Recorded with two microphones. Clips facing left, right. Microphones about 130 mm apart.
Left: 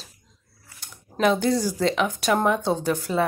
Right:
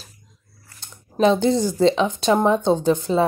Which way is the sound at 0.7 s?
25° right (ahead or behind).